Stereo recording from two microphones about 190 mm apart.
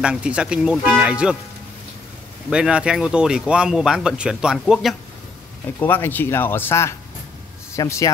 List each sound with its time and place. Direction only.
0.0 s speech: 5° right (ahead or behind)
2.5 s speech: 5° right (ahead or behind)
5.8 s a man's voice: 10° left (ahead or behind)